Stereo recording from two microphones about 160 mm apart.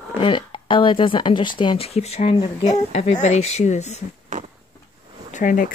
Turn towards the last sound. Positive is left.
turn(degrees=55)  # may be behind; listen again after turning